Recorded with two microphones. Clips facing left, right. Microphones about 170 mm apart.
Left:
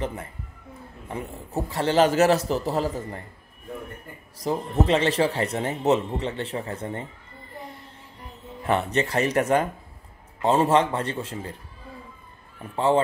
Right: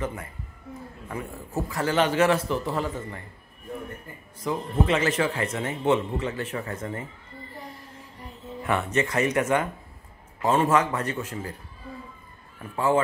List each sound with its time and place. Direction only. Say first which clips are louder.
0.0 s speech: left 1 dB; 30° left (ahead or behind)
1.7 s speech: left 4 dB; 30° left (ahead or behind)
4.4 s speech: left 2 dB; 35° left (ahead or behind)
8.6 s a man's voice: left 2 dB; 30° left (ahead or behind)
12.7 s a man's voice: left 2 dB; 30° left (ahead or behind)